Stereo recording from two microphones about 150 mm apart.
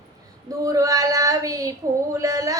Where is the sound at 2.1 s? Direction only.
20° right (ahead or behind).